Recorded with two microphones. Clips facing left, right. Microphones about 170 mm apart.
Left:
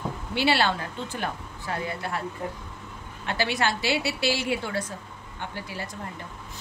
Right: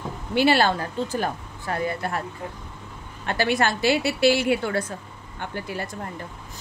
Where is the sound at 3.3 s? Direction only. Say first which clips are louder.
Right 4 dB; 50° right (ahead or behind).